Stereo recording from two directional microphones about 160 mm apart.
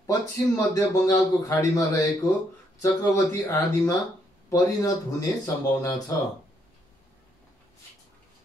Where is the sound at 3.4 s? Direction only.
20° left (ahead or behind).